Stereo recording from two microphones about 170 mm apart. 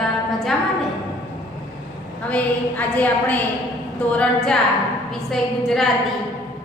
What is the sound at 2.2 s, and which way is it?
A woman's voice, 10° left (ahead or behind).